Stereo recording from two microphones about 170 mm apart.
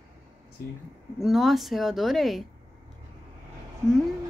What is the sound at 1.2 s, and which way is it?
A woman's voice, centre (ahead or behind).